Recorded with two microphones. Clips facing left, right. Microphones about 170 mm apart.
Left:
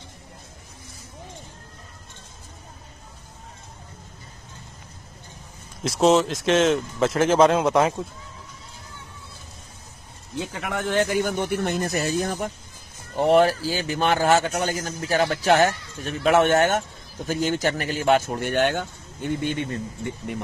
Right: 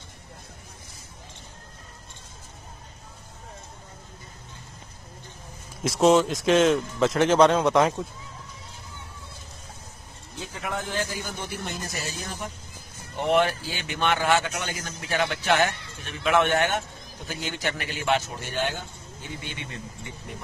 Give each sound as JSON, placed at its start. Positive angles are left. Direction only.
{"t": 5.9, "sound": "speech", "side_deg": 0}
{"t": 10.5, "sound": "speech", "side_deg": 75}
{"t": 13.2, "sound": "a man's voice", "side_deg": 35}